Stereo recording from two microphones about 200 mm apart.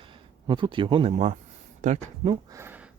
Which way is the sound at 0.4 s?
25° right (ahead or behind).